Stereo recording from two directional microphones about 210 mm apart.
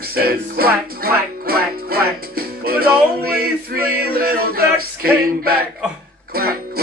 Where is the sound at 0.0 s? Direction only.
45° right (ahead or behind).